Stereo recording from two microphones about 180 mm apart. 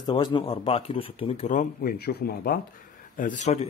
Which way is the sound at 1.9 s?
60° left (ahead or behind).